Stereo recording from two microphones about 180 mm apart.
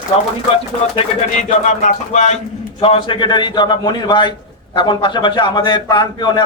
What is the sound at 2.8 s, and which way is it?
A man's voice, 30° left (ahead or behind).